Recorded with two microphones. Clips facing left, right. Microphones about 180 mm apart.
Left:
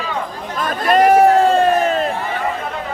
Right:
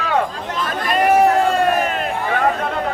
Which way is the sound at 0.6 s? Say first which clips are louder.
Left 5 dB; 40° left (ahead or behind).